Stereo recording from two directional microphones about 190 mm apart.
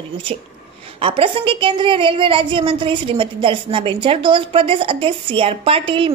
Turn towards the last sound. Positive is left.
turn(degrees=-30)  # may be behind; listen again after turning